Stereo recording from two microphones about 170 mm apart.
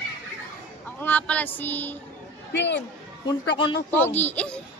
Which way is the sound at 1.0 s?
10° left (ahead or behind).